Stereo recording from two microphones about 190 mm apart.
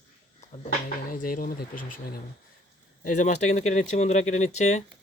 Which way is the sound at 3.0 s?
40° left (ahead or behind).